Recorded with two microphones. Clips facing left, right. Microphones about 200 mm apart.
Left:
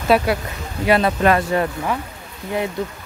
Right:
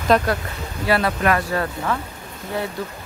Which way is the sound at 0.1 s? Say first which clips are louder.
Left 1 dB; 10° left (ahead or behind).